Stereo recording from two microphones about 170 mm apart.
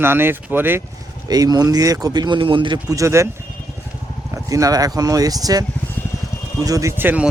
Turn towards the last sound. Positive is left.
turn(degrees=-10)  # may be behind; listen again after turning